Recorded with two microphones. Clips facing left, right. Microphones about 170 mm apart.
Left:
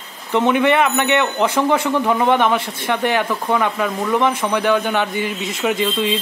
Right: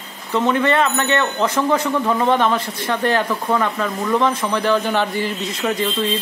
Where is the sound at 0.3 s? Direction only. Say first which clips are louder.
Left 2 dB; 15° left (ahead or behind).